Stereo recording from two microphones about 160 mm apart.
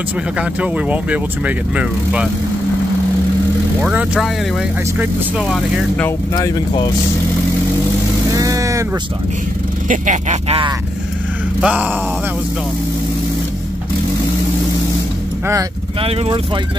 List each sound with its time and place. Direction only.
0.4 s speech: 10° right (ahead or behind)
3.8 s speech: 5° right (ahead or behind)
6.3 s speech: 25° left (ahead or behind)
8.3 s vehicle: 20° right (ahead or behind)
9.8 s speech: 50° right (ahead or behind)
11.6 s speech: 10° right (ahead or behind)